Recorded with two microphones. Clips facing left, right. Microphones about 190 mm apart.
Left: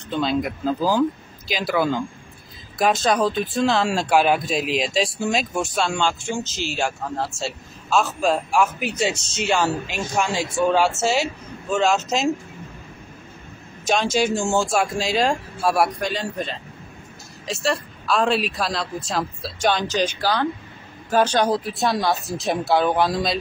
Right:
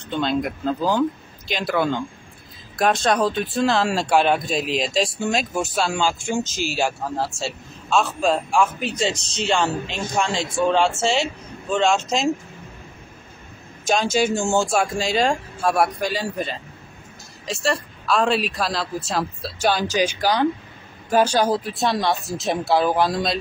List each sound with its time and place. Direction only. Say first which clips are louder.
0.1 s speech: even; centre (ahead or behind)
9.1 s speech: even; 35° right (ahead or behind)
9.5 s a man's voice: even; 5° left (ahead or behind)
13.8 s speech: even; centre (ahead or behind)